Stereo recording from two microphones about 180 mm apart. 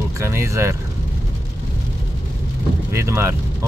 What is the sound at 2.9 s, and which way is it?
Speech, 15° right (ahead or behind).